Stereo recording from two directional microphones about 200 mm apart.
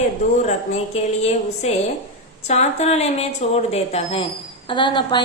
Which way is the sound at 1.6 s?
35° left (ahead or behind).